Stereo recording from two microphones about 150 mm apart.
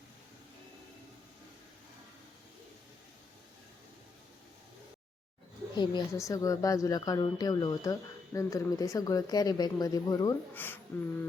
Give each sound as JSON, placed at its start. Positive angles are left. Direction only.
{"t": 5.7, "sound": "a woman's voice", "side_deg": 30}
{"t": 10.5, "sound": "speech", "side_deg": 15}